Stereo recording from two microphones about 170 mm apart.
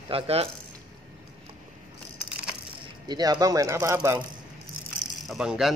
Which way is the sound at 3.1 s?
20° right (ahead or behind).